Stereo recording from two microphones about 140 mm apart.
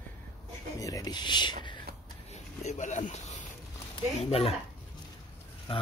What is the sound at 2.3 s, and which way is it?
Speech, 55° left (ahead or behind).